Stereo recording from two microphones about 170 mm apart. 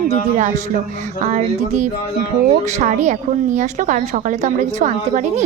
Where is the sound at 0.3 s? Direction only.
45° right (ahead or behind).